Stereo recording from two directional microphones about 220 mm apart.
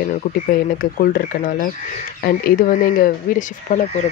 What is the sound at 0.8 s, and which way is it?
Speech, 40° left (ahead or behind).